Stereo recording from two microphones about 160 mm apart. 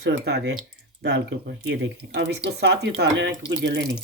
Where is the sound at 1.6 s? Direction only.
90° right.